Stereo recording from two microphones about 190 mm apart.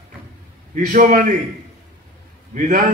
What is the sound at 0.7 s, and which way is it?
Speech, 40° right (ahead or behind).